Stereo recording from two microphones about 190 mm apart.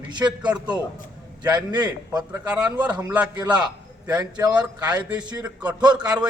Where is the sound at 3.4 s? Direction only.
20° right (ahead or behind).